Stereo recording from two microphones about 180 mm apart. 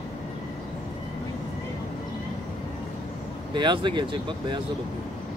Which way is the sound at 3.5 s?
25° right (ahead or behind).